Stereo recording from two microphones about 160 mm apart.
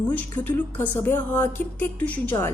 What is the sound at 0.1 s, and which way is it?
A woman's voice, 10° left (ahead or behind).